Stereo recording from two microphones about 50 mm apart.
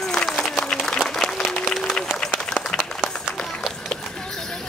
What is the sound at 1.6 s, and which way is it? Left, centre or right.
Run, centre.